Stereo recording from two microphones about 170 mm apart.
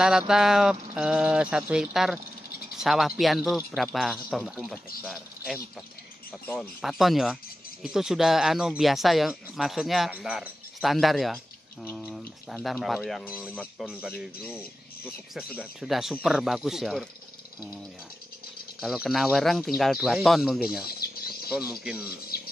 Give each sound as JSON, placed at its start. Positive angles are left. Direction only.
{"t": 0.3, "sound": "speech", "side_deg": 0}
{"t": 6.8, "sound": "speech", "side_deg": 0}
{"t": 18.8, "sound": "speech", "side_deg": 0}
{"t": 21.0, "sound": "speech", "side_deg": 65}
{"t": 21.5, "sound": "speech", "side_deg": -5}
{"t": 22.3, "sound": "music", "side_deg": 65}